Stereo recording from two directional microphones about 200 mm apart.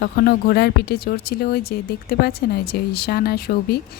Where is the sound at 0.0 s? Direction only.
50° left (ahead or behind).